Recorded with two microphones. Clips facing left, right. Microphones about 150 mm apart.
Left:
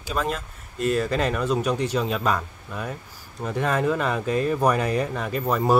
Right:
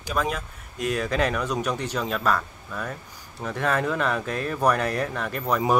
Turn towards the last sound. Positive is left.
turn(degrees=0)  # may be behind; listen again after turning